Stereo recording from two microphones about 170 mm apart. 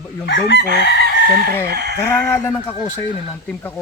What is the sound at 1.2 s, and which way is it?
Chicken, 60° right (ahead or behind).